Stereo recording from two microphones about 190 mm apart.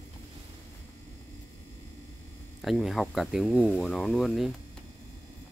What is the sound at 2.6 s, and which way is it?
Speech, centre (ahead or behind).